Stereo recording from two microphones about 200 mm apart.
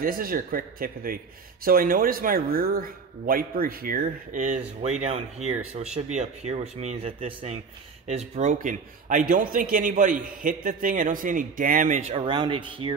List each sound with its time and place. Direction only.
0.0 s a man's voice: 45° right (ahead or behind)
5.4 s speech: 90° right
6.1 s a man's voice: 30° right (ahead or behind)